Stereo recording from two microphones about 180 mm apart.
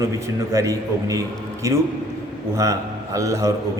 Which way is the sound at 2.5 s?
15° right (ahead or behind).